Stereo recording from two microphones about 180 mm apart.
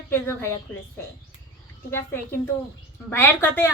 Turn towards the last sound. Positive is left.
turn(degrees=15)  # may be behind; listen again after turning